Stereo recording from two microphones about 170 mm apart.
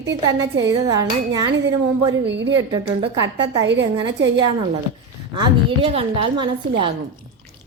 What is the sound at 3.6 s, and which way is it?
Speech, 90° right.